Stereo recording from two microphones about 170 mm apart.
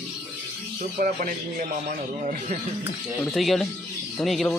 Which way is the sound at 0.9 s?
55° right (ahead or behind).